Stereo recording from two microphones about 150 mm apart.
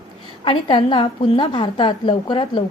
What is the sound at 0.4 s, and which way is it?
A woman's voice, 35° left (ahead or behind).